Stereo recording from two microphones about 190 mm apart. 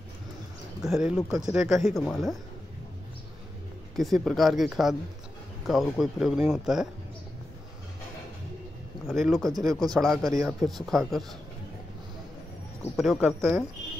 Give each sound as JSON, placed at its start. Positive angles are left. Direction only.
{"t": 0.8, "sound": "speech", "side_deg": 0}
{"t": 3.9, "sound": "speech", "side_deg": 0}
{"t": 9.0, "sound": "speech", "side_deg": 0}
{"t": 9.7, "sound": "a man's voice", "side_deg": -20}
{"t": 9.9, "sound": "speech", "side_deg": 0}
{"t": 12.9, "sound": "speech", "side_deg": 0}